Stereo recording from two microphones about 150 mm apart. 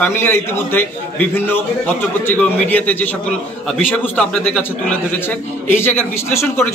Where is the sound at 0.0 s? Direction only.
15° left (ahead or behind).